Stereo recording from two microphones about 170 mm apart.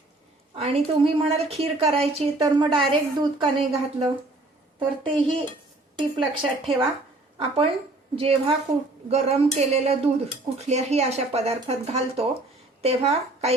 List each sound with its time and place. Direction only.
0.5 s a woman's voice: 35° right (ahead or behind)